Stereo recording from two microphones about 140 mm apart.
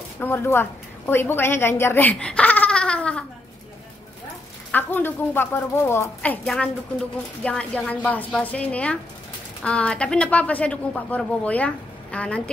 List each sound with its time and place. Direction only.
0.2 s a woman's voice: 15° left (ahead or behind)
4.6 s speech: 15° left (ahead or behind)
6.4 s a woman's voice: centre (ahead or behind)